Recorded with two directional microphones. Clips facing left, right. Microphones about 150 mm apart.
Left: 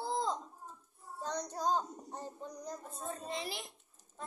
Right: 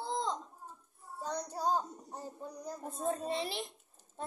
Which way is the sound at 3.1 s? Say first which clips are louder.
Right 6 dB; 35° right (ahead or behind).